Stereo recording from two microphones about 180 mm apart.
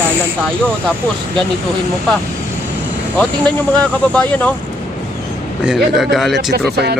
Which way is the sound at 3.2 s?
5° left (ahead or behind).